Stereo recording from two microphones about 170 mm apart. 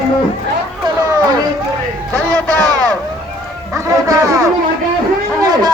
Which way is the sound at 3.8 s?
20° right (ahead or behind).